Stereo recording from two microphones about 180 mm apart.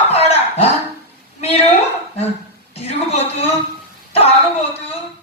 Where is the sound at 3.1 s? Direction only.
35° left (ahead or behind).